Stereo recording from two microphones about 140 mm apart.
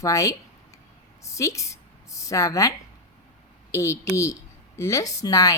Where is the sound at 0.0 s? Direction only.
20° left (ahead or behind).